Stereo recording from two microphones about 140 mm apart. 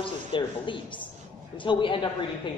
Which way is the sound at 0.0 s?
35° left (ahead or behind).